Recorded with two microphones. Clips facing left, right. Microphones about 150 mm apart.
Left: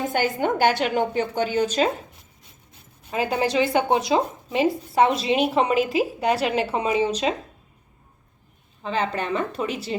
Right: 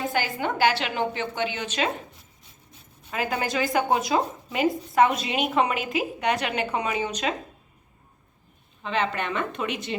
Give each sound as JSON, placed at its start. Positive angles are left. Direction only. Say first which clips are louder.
{"t": 0.1, "sound": "a woman's voice", "louder": "left 4 dB", "side_deg": 50}
{"t": 3.1, "sound": "a woman's voice", "louder": "left 4 dB", "side_deg": 30}
{"t": 8.8, "sound": "a woman's voice", "louder": "left 1 dB", "side_deg": 35}